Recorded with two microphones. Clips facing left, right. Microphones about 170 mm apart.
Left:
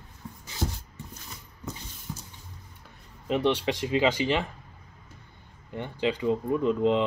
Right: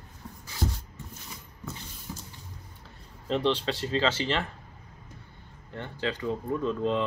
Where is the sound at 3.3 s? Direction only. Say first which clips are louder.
Left 2 dB; 10° left (ahead or behind).